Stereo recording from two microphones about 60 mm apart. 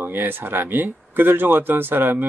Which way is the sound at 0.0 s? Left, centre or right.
Right.